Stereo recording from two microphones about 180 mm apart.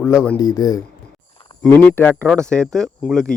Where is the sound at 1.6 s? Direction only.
10° left (ahead or behind).